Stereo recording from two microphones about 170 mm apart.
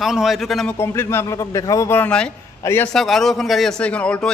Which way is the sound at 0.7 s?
15° left (ahead or behind).